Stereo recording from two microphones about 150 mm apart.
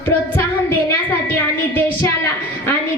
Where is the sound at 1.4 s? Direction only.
15° left (ahead or behind).